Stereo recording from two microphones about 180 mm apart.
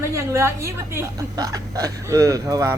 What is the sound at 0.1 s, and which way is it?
A woman's voice, 15° right (ahead or behind).